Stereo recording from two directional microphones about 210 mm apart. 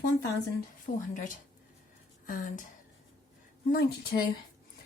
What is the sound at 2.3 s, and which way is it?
Speech, 40° left (ahead or behind).